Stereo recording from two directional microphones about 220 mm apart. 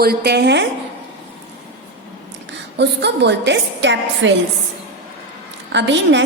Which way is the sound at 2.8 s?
50° right (ahead or behind).